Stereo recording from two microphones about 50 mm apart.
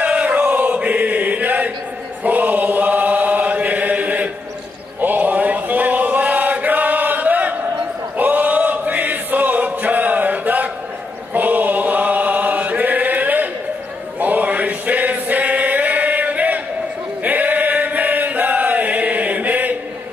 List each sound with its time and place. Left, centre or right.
0.0 s chant: right
8.2 s choir: right
11.3 s chant: right
14.2 s choir: right
17.2 s chant: right